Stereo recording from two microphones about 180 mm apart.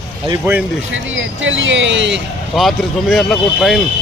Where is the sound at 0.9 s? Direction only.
90° right.